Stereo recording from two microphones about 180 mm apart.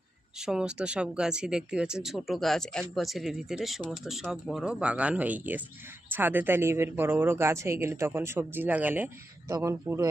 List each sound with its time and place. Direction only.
0.3 s speech: 5° right (ahead or behind)